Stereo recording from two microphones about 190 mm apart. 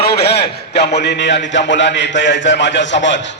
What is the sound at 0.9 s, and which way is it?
A man's voice, 60° left (ahead or behind).